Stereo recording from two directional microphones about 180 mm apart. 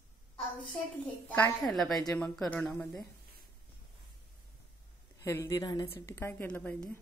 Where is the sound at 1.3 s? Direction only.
5° left (ahead or behind).